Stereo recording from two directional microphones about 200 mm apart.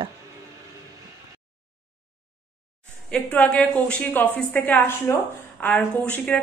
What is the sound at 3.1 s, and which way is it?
A woman's voice, 5° left (ahead or behind).